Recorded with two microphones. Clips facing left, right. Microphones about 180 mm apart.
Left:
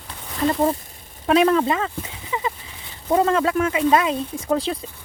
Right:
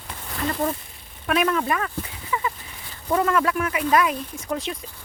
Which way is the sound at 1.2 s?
30° left (ahead or behind).